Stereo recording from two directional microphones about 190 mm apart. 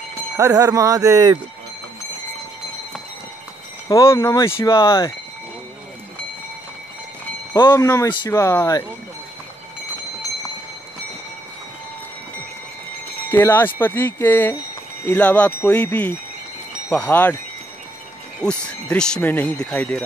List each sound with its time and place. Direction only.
0.4 s speech: 20° right (ahead or behind)
3.9 s speech: 15° left (ahead or behind)
7.5 s speech: 20° left (ahead or behind)
13.3 s speech: 10° left (ahead or behind)
18.4 s speech: 5° left (ahead or behind)